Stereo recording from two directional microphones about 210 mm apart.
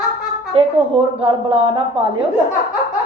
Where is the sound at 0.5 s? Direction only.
25° right (ahead or behind).